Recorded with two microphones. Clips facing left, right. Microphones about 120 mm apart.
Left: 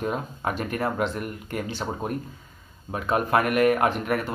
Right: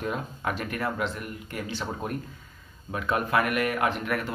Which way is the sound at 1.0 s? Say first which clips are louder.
Left 4 dB; 55° left (ahead or behind).